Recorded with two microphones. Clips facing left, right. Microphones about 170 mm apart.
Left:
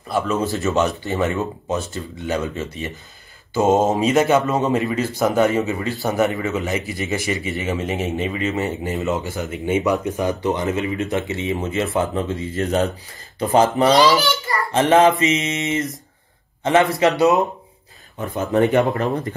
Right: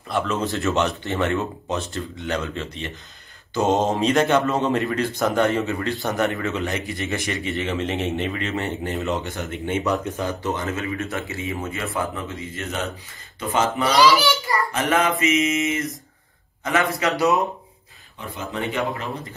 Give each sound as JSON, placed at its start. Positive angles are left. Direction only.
{"t": 0.1, "sound": "a man's voice", "side_deg": 5}
{"t": 18.3, "sound": "speech", "side_deg": 45}